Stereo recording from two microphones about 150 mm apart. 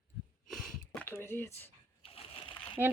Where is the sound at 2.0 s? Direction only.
40° left (ahead or behind).